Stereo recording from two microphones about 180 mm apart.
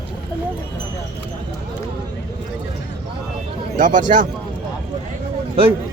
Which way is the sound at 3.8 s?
45° right (ahead or behind).